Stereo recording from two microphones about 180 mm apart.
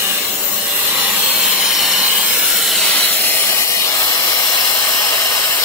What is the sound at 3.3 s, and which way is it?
Steam, 15° left (ahead or behind).